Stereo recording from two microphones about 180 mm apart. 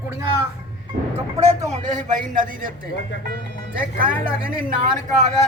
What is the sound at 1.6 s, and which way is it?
A man's voice, 40° right (ahead or behind).